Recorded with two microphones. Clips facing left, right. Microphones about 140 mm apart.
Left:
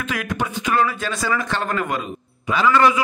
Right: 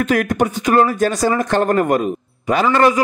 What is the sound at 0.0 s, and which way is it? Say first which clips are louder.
Speech: right 9 dB; 45° right (ahead or behind).